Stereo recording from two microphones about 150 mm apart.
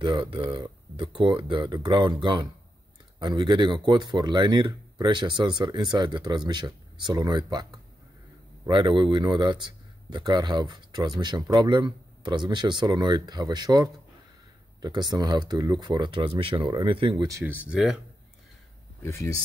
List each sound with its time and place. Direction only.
0.0 s speech: 35° right (ahead or behind)
8.6 s speech: 30° right (ahead or behind)
17.3 s speech: 20° right (ahead or behind)
17.6 s speech: 5° right (ahead or behind)
19.0 s speech: 20° left (ahead or behind)